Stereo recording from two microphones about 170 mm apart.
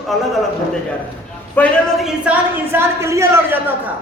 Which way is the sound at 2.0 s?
5° right (ahead or behind).